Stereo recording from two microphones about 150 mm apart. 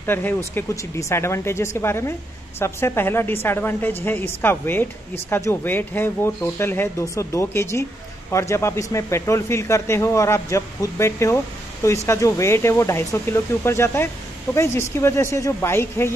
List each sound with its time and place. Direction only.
0.0 s speech: 15° left (ahead or behind)